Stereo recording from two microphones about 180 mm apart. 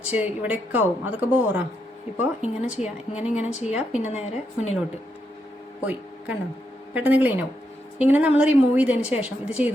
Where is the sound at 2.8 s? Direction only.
35° left (ahead or behind).